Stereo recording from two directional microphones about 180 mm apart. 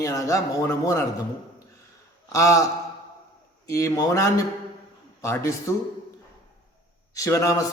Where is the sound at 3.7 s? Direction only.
15° left (ahead or behind).